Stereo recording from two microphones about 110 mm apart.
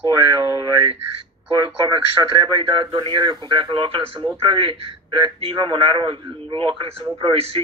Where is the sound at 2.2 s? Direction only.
30° right (ahead or behind).